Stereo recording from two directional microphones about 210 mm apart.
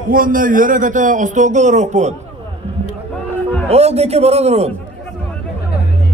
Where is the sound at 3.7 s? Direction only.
30° right (ahead or behind).